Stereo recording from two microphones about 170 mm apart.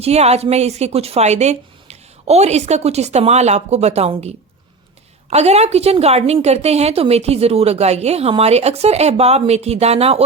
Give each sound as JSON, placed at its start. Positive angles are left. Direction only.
{"t": 0.0, "sound": "a woman's voice", "side_deg": -40}